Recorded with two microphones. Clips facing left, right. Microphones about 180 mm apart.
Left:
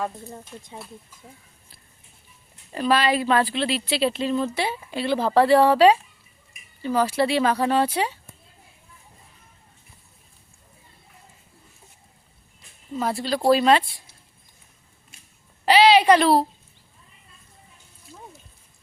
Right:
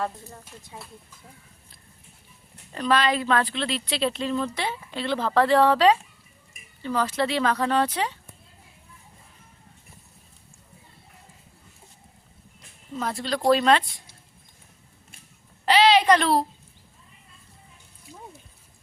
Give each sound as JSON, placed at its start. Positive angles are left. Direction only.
{"t": 0.0, "sound": "speech", "side_deg": 20}
{"t": 2.7, "sound": "speech", "side_deg": 10}
{"t": 12.9, "sound": "speech", "side_deg": 5}
{"t": 15.6, "sound": "a woman's voice", "side_deg": 10}
{"t": 18.1, "sound": "a sound", "side_deg": -15}